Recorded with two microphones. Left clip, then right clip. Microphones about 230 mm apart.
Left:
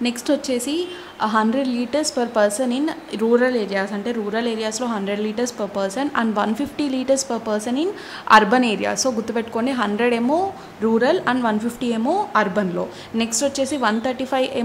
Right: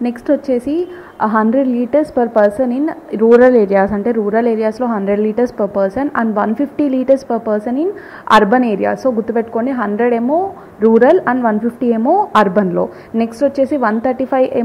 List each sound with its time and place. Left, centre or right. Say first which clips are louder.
0.0 s a woman's voice: right 5 dB; centre
3.5 s a woman's voice: right 11 dB; right
3.8 s a woman's voice: right 10 dB; centre